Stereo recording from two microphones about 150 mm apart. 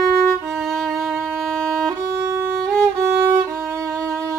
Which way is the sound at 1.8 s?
20° right (ahead or behind).